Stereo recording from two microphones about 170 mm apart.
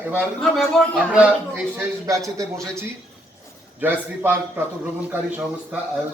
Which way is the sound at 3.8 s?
10° right (ahead or behind).